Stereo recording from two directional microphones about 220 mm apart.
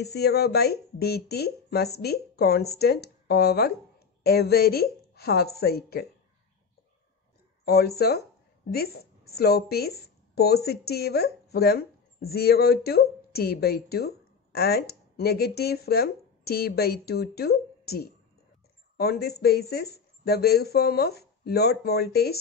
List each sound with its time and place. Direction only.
0.0 s speech: 45° left (ahead or behind)
7.6 s a woman's voice: 45° left (ahead or behind)